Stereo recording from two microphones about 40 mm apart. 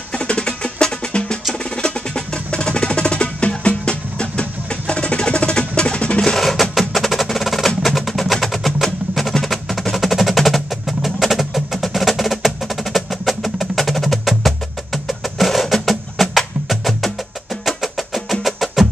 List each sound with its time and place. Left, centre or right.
0.1 s music: centre
1.5 s percussion: left
6.9 s music: centre